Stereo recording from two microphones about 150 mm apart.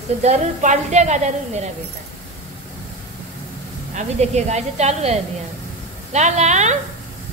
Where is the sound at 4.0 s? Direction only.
50° right (ahead or behind).